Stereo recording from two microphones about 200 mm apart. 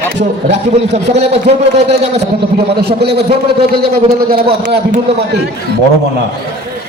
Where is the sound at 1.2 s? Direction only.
30° right (ahead or behind).